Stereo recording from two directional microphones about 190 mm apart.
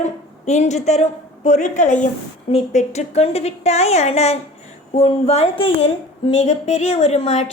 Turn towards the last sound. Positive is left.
turn(degrees=35)  # may be behind; listen again after turning